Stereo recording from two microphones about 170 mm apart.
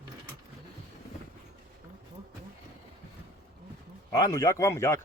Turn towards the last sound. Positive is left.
turn(degrees=15)  # may be behind; listen again after turning